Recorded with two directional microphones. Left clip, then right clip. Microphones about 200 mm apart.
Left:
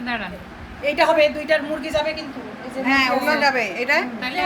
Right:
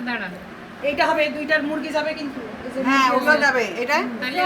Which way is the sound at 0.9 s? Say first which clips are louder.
Left 4 dB; 55° left (ahead or behind).